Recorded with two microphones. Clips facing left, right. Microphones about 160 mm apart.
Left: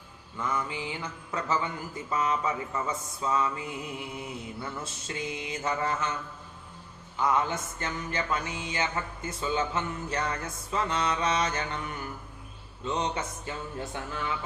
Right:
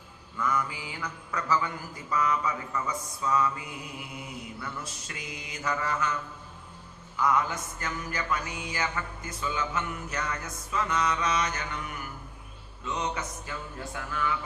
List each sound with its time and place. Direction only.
0.3 s mantra: 25° left (ahead or behind)
4.6 s mantra: 25° left (ahead or behind)
7.2 s mantra: 25° left (ahead or behind)